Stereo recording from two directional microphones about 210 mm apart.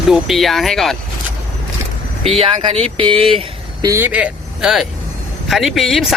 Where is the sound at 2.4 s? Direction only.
25° right (ahead or behind).